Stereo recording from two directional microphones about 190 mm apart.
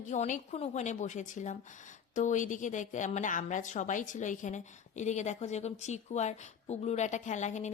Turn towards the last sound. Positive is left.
turn(degrees=40)  # may be behind; listen again after turning